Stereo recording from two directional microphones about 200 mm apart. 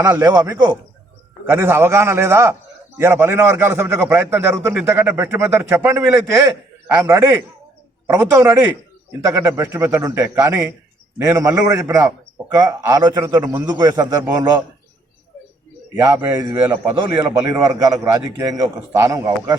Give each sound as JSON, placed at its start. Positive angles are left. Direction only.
{"t": 0.1, "sound": "a man's voice", "side_deg": -15}
{"t": 16.0, "sound": "a man's voice", "side_deg": -15}